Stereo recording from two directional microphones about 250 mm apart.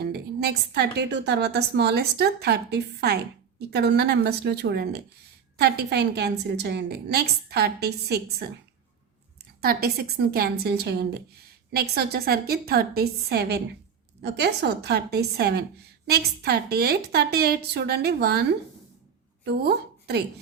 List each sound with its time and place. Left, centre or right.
0.0 s a woman's voice: right
9.6 s a woman's voice: right
19.5 s a woman's voice: right